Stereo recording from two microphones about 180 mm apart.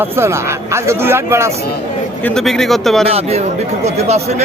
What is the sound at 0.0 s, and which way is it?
A man's voice, 15° right (ahead or behind).